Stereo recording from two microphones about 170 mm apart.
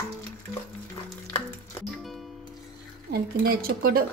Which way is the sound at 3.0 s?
65° right (ahead or behind).